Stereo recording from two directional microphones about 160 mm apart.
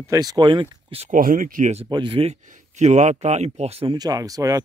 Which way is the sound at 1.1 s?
60° right (ahead or behind).